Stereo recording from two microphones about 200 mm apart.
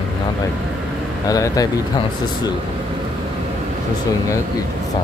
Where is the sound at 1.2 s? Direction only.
15° left (ahead or behind).